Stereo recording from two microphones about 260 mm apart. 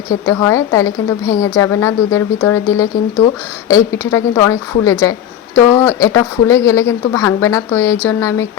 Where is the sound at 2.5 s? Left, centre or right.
Left.